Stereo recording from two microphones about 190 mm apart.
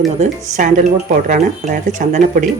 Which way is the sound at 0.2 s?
40° right (ahead or behind).